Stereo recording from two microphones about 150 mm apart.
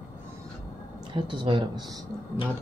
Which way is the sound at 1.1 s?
30° right (ahead or behind).